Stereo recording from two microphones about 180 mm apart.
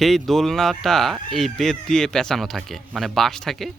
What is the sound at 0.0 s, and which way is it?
Speech, centre (ahead or behind).